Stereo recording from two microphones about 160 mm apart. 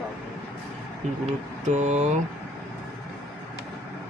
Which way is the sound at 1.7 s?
45° right (ahead or behind).